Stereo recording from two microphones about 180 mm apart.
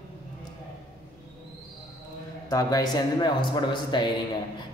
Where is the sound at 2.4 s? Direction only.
20° left (ahead or behind).